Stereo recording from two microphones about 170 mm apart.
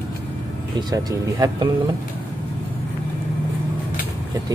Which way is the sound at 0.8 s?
25° right (ahead or behind).